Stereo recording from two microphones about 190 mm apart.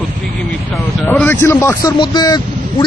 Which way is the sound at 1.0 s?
10° left (ahead or behind).